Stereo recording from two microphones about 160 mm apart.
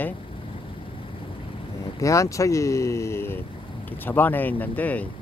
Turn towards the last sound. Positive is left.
turn(degrees=10)  # may be behind; listen again after turning